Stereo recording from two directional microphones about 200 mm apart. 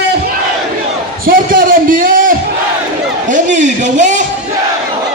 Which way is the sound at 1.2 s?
45° right (ahead or behind).